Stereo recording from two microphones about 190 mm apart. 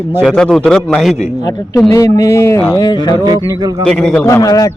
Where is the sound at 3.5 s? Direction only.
20° right (ahead or behind).